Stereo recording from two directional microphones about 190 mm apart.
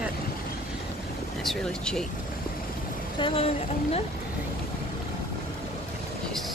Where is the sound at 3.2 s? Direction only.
30° left (ahead or behind).